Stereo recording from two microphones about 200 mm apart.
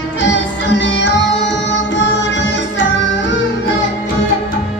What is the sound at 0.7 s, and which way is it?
Music, 65° left (ahead or behind).